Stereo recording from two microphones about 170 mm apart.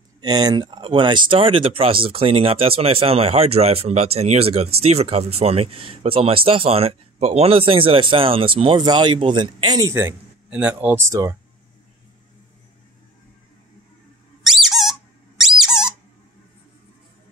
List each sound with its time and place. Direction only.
0.2 s speech: 25° right (ahead or behind)
14.4 s squeak: centre (ahead or behind)